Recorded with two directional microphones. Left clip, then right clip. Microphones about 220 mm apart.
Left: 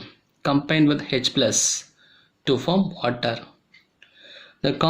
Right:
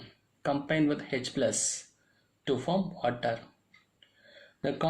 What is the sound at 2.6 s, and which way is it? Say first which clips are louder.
Speech: left 7 dB; 40° left (ahead or behind).